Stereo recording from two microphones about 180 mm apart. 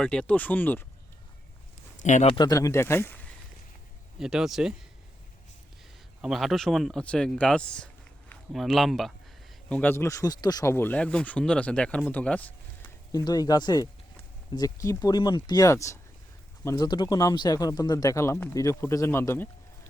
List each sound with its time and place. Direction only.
0.0 s speech: 5° left (ahead or behind)
2.0 s speech: 40° left (ahead or behind)
2.3 s speech: 20° left (ahead or behind)
4.2 s speech: 5° right (ahead or behind)
6.2 s speech: centre (ahead or behind)
13.1 s speech: 20° left (ahead or behind)